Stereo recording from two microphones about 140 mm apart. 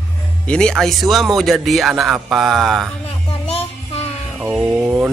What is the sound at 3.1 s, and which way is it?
Child singing, 45° left (ahead or behind).